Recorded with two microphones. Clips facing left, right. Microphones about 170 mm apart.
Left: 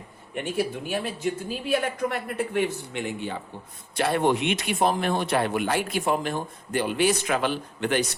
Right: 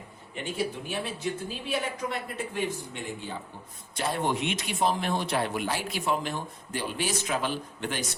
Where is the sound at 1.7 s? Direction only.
60° left (ahead or behind).